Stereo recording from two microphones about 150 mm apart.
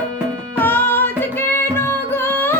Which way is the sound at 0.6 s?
15° left (ahead or behind).